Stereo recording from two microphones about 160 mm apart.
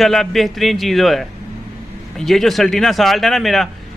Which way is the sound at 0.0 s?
Centre (ahead or behind).